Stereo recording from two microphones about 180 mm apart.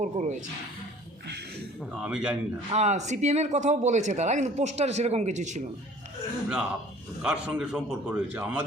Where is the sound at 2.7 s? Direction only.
40° right (ahead or behind).